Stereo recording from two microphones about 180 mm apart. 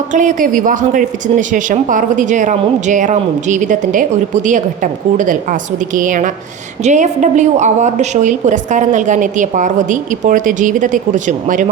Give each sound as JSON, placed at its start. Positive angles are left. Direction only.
{"t": 0.1, "sound": "speech", "side_deg": -45}